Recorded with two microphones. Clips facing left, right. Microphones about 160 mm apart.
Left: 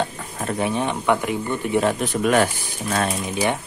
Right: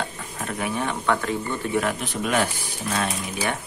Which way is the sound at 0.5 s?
25° left (ahead or behind).